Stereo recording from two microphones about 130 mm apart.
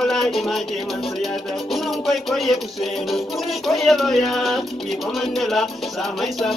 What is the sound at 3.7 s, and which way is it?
Music, centre (ahead or behind).